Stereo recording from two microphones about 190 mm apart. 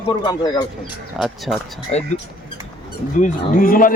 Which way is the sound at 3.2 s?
45° left (ahead or behind).